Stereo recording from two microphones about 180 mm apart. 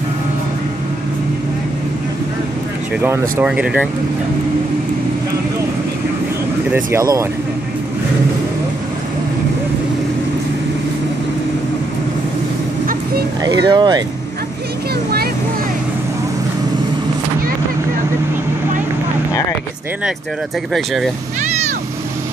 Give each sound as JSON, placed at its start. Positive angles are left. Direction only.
{"t": 3.0, "sound": "speech", "side_deg": -10}
{"t": 6.7, "sound": "speech", "side_deg": -15}
{"t": 13.4, "sound": "speech", "side_deg": -20}
{"t": 20.7, "sound": "speech", "side_deg": 0}